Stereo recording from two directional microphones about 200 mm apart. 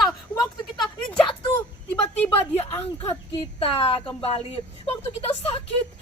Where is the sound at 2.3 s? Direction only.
30° left (ahead or behind).